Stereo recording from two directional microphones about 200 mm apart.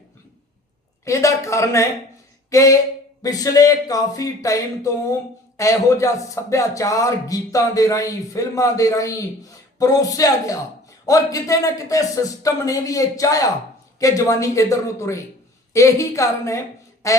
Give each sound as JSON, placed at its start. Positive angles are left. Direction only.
{"t": 1.0, "sound": "speech", "side_deg": 15}
{"t": 2.5, "sound": "a sound", "side_deg": 15}
{"t": 3.2, "sound": "speech", "side_deg": 20}